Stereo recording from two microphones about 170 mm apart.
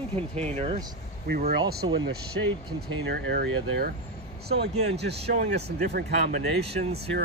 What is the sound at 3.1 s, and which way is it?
Speech, 70° right (ahead or behind).